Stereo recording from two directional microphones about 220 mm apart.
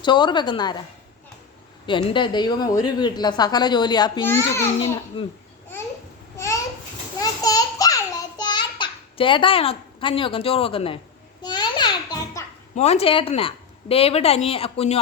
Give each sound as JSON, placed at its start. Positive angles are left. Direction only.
{"t": 0.0, "sound": "speech", "side_deg": 20}
{"t": 1.9, "sound": "speech", "side_deg": 20}
{"t": 5.2, "sound": "speech", "side_deg": 25}
{"t": 6.3, "sound": "babbling", "side_deg": 15}
{"t": 7.2, "sound": "a sound", "side_deg": 15}
{"t": 12.7, "sound": "speech", "side_deg": 30}